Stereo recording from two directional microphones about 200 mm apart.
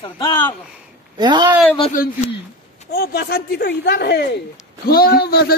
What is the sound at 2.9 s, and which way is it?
A man's voice, 50° left (ahead or behind).